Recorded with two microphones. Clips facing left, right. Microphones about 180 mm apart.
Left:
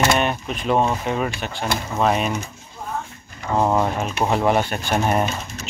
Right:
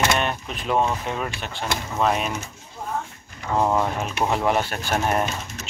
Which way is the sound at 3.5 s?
10° left (ahead or behind).